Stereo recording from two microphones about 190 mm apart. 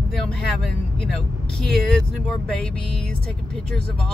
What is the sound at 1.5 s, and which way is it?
Speech, centre (ahead or behind).